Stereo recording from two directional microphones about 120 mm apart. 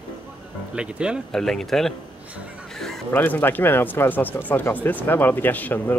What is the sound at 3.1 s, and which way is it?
Speech, 15° left (ahead or behind).